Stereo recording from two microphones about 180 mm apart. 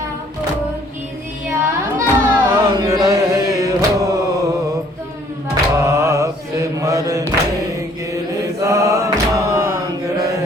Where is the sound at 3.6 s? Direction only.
15° right (ahead or behind).